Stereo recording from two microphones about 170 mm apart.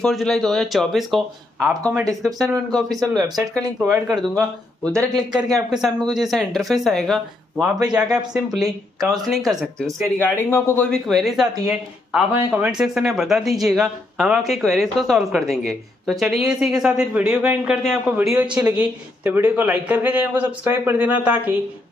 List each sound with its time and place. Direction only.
0.0 s speech: 5° left (ahead or behind)
3.3 s speech: 15° right (ahead or behind)
4.1 s speech: centre (ahead or behind)
10.1 s speech: 10° left (ahead or behind)
10.9 s speech: centre (ahead or behind)